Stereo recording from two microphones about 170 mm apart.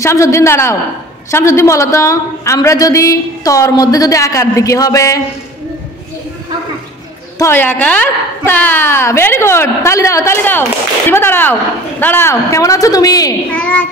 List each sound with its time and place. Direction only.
0.0 s a woman's voice: 15° left (ahead or behind)
7.3 s a woman's voice: 15° left (ahead or behind)
13.5 s a woman's voice: 10° left (ahead or behind)